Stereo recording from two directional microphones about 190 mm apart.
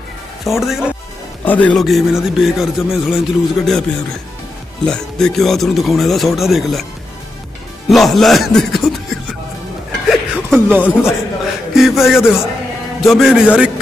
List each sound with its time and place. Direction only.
0.5 s a man's voice: centre (ahead or behind)
4.8 s a man's voice: 5° left (ahead or behind)
7.9 s a man's voice: centre (ahead or behind)
10.0 s music: 5° right (ahead or behind)
11.7 s a man's voice: centre (ahead or behind)